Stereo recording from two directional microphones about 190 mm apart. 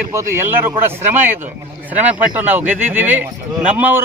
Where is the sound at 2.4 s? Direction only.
10° right (ahead or behind).